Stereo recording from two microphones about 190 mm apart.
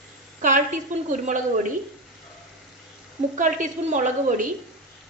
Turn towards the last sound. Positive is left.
turn(degrees=-40)  # may be behind; listen again after turning